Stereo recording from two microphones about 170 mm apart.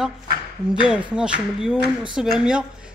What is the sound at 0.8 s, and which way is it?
Speech, 5° right (ahead or behind).